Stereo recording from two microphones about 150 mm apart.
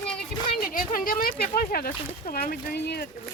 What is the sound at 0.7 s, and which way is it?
Speech, 70° left (ahead or behind).